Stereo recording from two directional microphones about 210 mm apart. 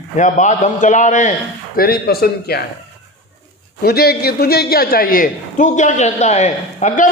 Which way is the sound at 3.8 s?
50° left (ahead or behind).